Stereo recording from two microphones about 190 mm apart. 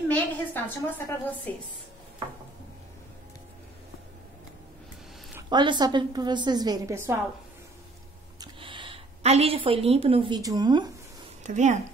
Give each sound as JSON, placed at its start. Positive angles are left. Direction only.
{"t": 0.1, "sound": "a woman's voice", "side_deg": 10}
{"t": 5.5, "sound": "a woman's voice", "side_deg": -25}
{"t": 8.4, "sound": "a woman's voice", "side_deg": -25}
{"t": 11.4, "sound": "speech", "side_deg": -40}